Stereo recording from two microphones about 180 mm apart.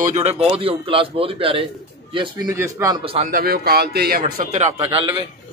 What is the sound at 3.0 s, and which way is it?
Speech, 35° right (ahead or behind).